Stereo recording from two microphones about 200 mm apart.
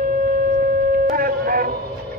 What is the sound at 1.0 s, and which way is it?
Speech, 45° right (ahead or behind).